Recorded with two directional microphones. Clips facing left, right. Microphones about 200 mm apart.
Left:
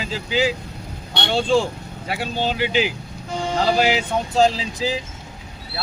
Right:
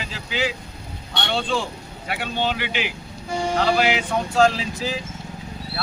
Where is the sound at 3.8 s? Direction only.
35° left (ahead or behind).